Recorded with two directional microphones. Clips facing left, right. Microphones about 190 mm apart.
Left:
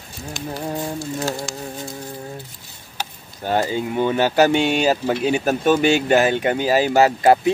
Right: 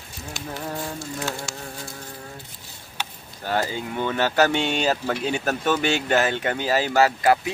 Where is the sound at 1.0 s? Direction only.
35° left (ahead or behind).